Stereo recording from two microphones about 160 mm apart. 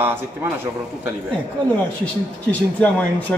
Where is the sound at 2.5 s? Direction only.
10° left (ahead or behind).